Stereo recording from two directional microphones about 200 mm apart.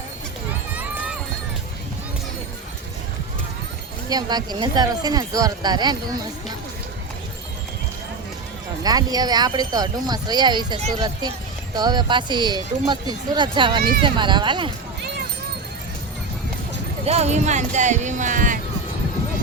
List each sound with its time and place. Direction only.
0.7 s music: 5° right (ahead or behind)
4.1 s speech: 20° right (ahead or behind)
8.8 s speech: 20° right (ahead or behind)
17.1 s speech: 35° right (ahead or behind)